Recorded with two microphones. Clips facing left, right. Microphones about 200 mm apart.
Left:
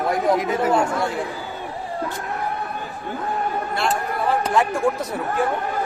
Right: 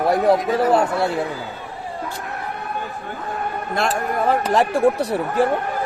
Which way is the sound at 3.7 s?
45° right (ahead or behind).